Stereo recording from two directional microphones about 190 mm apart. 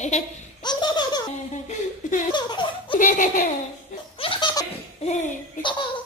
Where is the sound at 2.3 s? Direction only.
25° left (ahead or behind).